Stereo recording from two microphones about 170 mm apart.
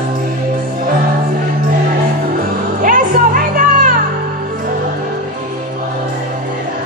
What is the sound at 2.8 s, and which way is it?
Music, 55° right (ahead or behind).